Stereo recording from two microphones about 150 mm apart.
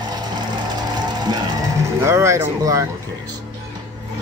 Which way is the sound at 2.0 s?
15° right (ahead or behind).